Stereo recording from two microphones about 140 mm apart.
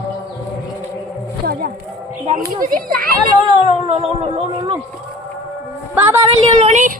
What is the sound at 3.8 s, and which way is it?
Speech, 45° right (ahead or behind).